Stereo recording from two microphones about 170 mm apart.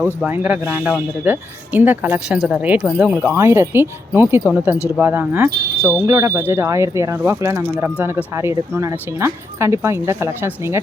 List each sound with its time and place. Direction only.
0.0 s speech: 10° right (ahead or behind)